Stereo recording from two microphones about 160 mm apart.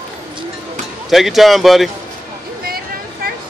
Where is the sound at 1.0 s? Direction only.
Centre (ahead or behind).